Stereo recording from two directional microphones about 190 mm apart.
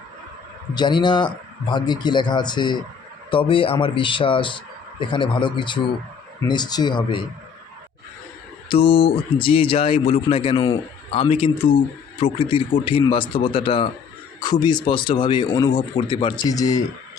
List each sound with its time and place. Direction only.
0.7 s speech: 25° left (ahead or behind)
8.7 s speech: 30° left (ahead or behind)